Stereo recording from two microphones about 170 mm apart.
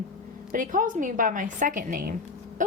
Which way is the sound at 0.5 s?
50° right (ahead or behind).